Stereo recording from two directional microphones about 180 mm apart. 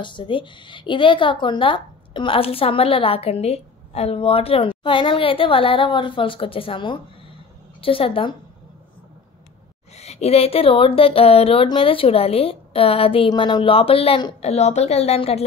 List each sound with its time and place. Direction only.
0.0 s a woman's voice: 25° left (ahead or behind)
9.9 s speech: 35° left (ahead or behind)